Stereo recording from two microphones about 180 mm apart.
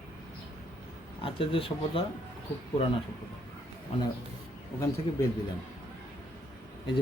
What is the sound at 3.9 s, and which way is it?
Speech, 35° left (ahead or behind).